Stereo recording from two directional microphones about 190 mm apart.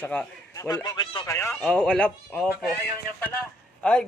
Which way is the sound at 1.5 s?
5° left (ahead or behind).